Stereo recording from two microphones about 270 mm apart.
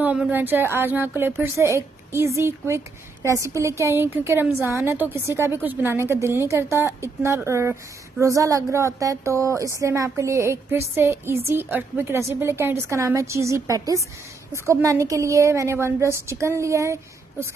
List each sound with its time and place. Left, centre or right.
0.0 s speech: centre